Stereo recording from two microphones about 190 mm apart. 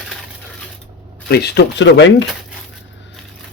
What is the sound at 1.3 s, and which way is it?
Speech, 60° left (ahead or behind).